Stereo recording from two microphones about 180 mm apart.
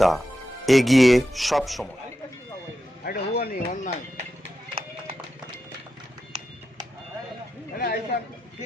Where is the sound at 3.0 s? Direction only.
65° left (ahead or behind).